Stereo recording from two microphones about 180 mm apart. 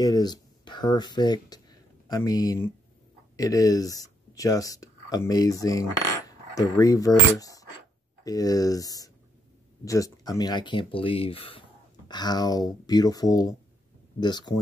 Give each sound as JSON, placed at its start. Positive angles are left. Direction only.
{"t": 0.0, "sound": "speech", "side_deg": 20}
{"t": 6.2, "sound": "coin", "side_deg": 20}
{"t": 8.2, "sound": "speech", "side_deg": 20}